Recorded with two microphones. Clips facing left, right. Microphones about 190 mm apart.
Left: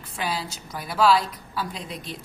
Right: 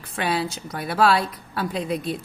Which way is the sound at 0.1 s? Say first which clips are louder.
Right 5 dB; 65° right (ahead or behind).